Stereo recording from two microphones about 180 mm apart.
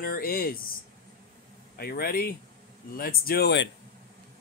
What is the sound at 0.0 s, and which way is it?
Speech, 55° left (ahead or behind).